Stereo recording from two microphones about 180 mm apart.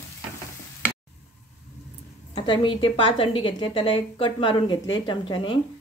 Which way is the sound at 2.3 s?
25° left (ahead or behind).